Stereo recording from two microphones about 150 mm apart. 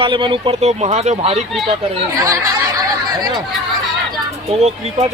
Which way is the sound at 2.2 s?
25° right (ahead or behind).